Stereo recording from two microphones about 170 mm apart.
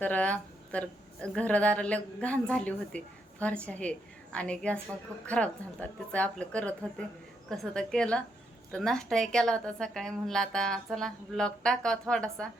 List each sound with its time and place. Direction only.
0.0 s a woman's voice: 10° left (ahead or behind)